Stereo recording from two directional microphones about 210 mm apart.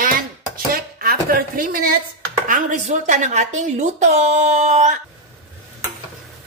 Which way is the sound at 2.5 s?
35° right (ahead or behind).